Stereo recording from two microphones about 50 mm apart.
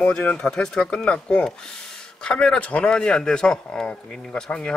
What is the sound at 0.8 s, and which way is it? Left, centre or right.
A man's voice, left.